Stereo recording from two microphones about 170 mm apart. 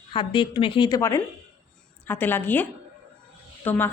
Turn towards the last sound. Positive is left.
turn(degrees=10)  # may be behind; listen again after turning